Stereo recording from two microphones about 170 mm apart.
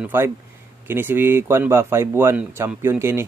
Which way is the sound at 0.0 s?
15° right (ahead or behind).